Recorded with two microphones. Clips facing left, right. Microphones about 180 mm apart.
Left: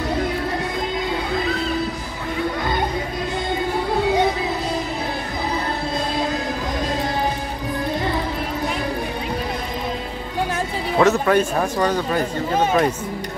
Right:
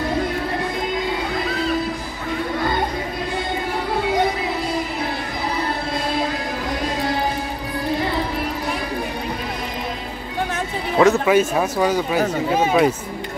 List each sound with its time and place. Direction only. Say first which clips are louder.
11.0 s speech: right 2 dB; 5° right (ahead or behind)